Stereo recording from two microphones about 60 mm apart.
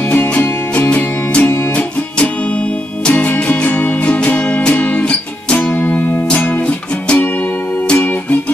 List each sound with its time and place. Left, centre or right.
0.0 s music: left
1.4 s music: left
1.7 s music: left